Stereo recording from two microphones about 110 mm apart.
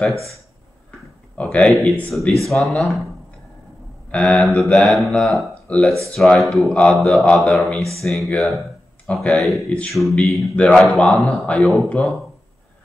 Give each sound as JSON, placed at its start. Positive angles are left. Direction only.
{"t": 0.1, "sound": "speech", "side_deg": -25}
{"t": 1.3, "sound": "speech", "side_deg": 10}
{"t": 1.7, "sound": "speech", "side_deg": 0}
{"t": 4.1, "sound": "speech", "side_deg": 5}
{"t": 5.5, "sound": "a sound", "side_deg": 10}
{"t": 6.1, "sound": "speech", "side_deg": 0}